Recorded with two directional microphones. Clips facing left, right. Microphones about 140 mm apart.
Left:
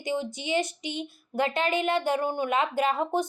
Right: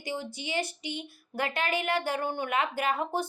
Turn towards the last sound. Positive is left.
turn(degrees=20)  # may be behind; listen again after turning